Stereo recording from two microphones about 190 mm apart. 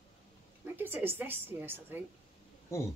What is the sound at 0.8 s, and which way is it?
A woman's voice, 10° right (ahead or behind).